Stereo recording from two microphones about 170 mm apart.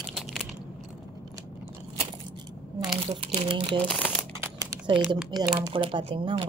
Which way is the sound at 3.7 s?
10° left (ahead or behind).